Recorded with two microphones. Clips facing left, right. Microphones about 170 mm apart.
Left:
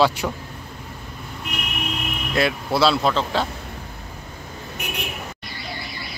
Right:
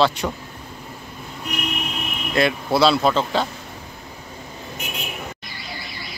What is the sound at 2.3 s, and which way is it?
Speech, centre (ahead or behind).